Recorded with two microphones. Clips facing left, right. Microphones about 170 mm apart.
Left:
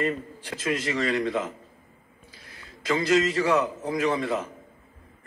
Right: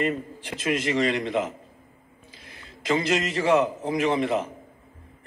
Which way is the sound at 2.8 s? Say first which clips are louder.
Left 2 dB; 20° right (ahead or behind).